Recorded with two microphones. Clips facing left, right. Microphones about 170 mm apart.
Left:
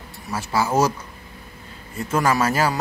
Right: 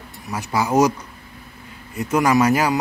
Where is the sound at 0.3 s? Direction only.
15° right (ahead or behind).